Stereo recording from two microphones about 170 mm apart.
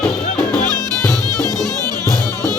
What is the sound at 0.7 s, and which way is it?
Music, 25° right (ahead or behind).